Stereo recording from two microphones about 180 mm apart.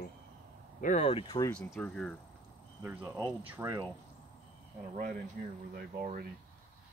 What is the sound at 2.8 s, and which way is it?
Speech, 15° right (ahead or behind).